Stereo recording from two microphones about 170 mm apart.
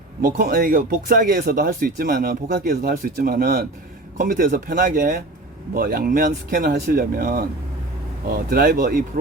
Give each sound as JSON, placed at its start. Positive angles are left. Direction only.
{"t": 0.2, "sound": "speech", "side_deg": -60}
{"t": 4.2, "sound": "speech", "side_deg": -50}